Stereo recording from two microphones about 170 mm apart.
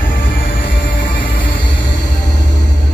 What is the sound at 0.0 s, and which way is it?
Music, 55° left (ahead or behind).